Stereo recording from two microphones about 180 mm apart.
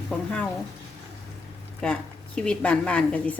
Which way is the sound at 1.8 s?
5° left (ahead or behind).